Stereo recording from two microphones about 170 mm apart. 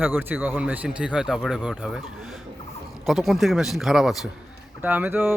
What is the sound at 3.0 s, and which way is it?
A man's voice, centre (ahead or behind).